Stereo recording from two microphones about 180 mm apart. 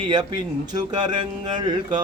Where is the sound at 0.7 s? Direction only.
25° right (ahead or behind).